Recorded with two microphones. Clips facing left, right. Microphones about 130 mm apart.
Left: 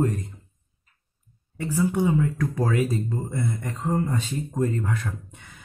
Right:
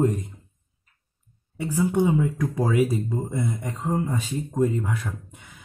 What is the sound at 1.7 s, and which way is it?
Speech, 20° right (ahead or behind).